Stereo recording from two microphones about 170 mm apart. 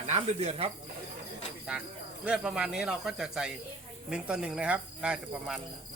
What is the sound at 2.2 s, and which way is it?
Speech, 5° right (ahead or behind).